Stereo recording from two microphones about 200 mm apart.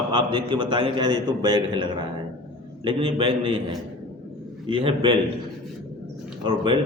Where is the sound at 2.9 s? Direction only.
25° right (ahead or behind).